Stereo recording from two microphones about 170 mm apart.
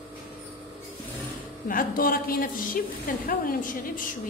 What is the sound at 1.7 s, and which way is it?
A woman's voice, 55° left (ahead or behind).